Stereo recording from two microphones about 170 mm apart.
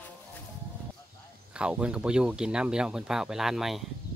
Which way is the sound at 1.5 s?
5° right (ahead or behind).